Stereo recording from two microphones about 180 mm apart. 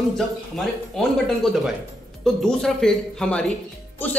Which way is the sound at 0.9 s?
Centre (ahead or behind).